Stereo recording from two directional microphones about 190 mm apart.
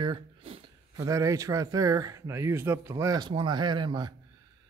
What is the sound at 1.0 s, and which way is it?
Speech, 15° right (ahead or behind).